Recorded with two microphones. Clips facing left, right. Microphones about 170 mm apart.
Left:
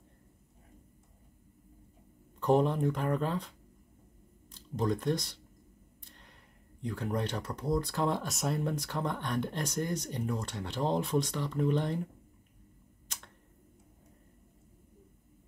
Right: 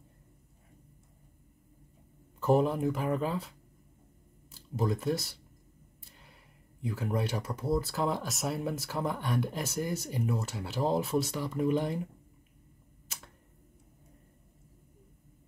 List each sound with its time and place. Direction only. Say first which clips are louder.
2.4 s speech: right 1 dB; 5° right (ahead or behind)
6.0 s a sound: even; 5° right (ahead or behind)
6.8 s speech: right 1 dB; 5° right (ahead or behind)